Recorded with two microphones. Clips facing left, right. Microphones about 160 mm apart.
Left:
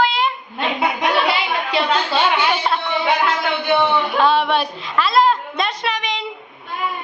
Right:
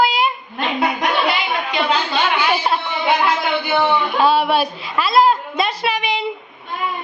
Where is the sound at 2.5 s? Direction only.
5° right (ahead or behind).